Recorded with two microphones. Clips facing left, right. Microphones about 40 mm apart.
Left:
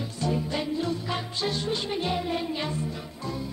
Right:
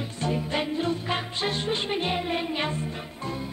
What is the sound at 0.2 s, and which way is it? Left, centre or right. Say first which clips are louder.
Music: right 1 dB; right.